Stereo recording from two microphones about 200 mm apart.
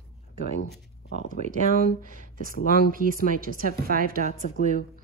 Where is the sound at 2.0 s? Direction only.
40° right (ahead or behind).